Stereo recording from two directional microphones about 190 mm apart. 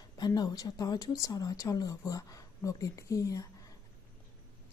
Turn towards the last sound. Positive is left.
turn(degrees=20)  # may be behind; listen again after turning